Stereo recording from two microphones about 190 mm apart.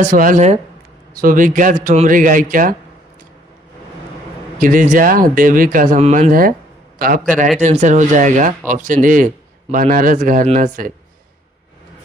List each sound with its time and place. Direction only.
0.1 s speech: 45° right (ahead or behind)
4.6 s speech: 45° right (ahead or behind)
7.5 s speech: 40° right (ahead or behind)